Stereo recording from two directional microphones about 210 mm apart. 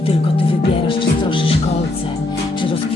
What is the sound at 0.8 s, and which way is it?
Speech, 25° left (ahead or behind).